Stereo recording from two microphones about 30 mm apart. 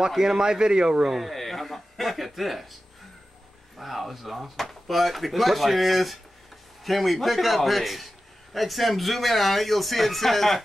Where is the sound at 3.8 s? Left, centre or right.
Centre.